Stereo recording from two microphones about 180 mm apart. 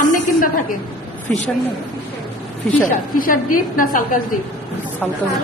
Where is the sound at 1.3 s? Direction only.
10° left (ahead or behind).